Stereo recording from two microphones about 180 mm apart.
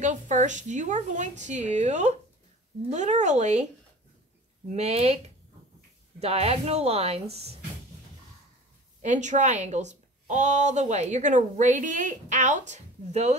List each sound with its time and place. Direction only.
0.0 s a woman's voice: 40° right (ahead or behind)
4.6 s a woman's voice: 35° right (ahead or behind)
9.0 s a woman's voice: 40° right (ahead or behind)